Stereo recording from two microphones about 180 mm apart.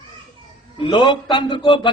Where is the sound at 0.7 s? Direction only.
25° left (ahead or behind).